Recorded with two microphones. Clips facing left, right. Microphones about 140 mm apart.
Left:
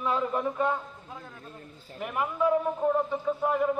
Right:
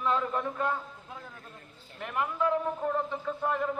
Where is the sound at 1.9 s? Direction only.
10° left (ahead or behind).